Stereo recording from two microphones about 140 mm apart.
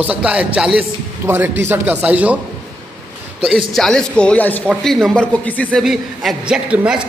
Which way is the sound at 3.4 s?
Centre (ahead or behind).